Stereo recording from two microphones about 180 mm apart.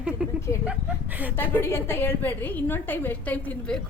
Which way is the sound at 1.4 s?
10° left (ahead or behind).